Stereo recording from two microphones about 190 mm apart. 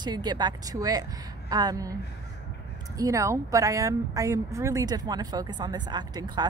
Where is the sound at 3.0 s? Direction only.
15° right (ahead or behind).